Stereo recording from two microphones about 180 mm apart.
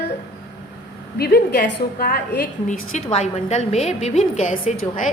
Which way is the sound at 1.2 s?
60° left (ahead or behind).